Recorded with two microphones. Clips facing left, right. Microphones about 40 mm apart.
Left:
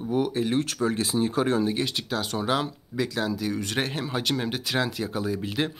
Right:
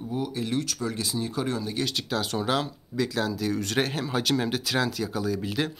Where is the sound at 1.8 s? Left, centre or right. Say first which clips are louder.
Even; centre; by 5.4 s left.